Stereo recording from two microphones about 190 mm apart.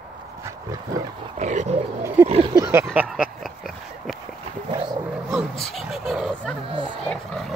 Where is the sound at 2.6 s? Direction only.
15° right (ahead or behind).